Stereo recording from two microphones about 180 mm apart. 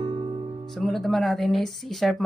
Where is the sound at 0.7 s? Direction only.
Centre (ahead or behind).